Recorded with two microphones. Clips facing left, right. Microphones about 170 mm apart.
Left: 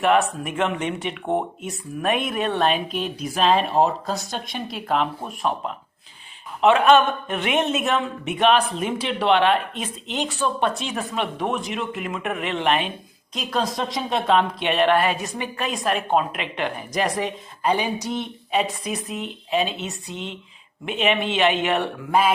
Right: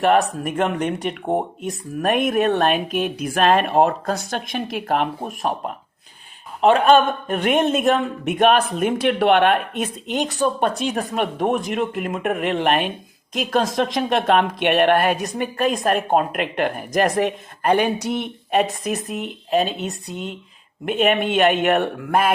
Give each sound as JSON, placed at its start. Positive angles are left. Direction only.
{"t": 0.0, "sound": "a man's voice", "side_deg": -40}
{"t": 13.5, "sound": "speech", "side_deg": -80}
{"t": 15.4, "sound": "a man's voice", "side_deg": -45}
{"t": 19.8, "sound": "a woman's voice", "side_deg": 0}
{"t": 21.0, "sound": "a man's voice", "side_deg": -50}